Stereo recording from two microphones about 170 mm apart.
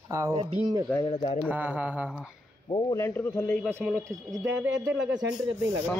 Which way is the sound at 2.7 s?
25° left (ahead or behind).